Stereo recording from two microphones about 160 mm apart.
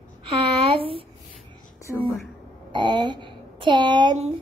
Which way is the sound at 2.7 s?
30° right (ahead or behind).